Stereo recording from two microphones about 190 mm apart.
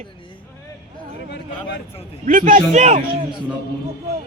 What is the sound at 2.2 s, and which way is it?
A man's voice, 45° right (ahead or behind).